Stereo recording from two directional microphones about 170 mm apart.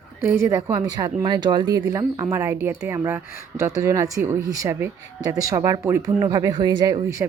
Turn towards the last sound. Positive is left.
turn(degrees=-25)  # may be behind; listen again after turning